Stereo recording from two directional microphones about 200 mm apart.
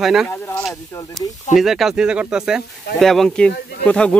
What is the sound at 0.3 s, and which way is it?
Speech, 15° left (ahead or behind).